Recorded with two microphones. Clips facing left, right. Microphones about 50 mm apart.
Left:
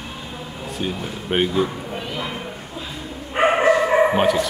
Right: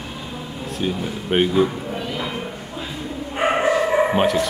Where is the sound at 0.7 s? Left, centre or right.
Centre.